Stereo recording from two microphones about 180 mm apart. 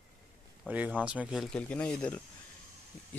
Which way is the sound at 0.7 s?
5° right (ahead or behind).